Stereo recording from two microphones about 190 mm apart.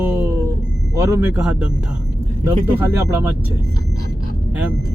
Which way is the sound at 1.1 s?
5° right (ahead or behind).